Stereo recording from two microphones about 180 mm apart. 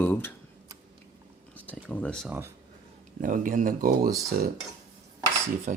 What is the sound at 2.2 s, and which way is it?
Speech, 15° right (ahead or behind).